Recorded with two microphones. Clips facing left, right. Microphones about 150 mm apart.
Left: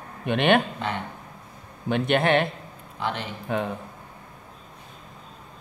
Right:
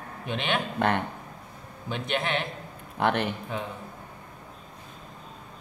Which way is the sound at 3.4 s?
65° left (ahead or behind).